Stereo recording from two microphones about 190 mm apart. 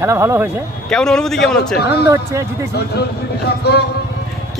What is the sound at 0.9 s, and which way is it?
Speech, 5° left (ahead or behind).